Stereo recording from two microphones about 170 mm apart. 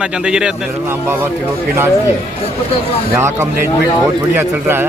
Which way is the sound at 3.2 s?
15° right (ahead or behind).